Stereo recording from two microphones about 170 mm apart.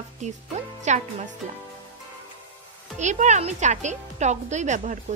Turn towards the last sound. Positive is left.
turn(degrees=-45)  # may be behind; listen again after turning